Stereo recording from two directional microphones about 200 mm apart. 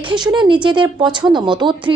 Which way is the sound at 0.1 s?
20° right (ahead or behind).